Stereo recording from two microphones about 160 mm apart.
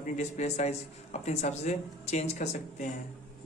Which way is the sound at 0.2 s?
45° left (ahead or behind).